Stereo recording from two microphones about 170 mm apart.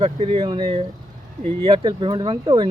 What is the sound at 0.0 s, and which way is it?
Speech, 35° right (ahead or behind).